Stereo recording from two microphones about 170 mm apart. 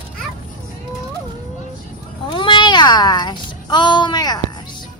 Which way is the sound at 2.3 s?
30° left (ahead or behind).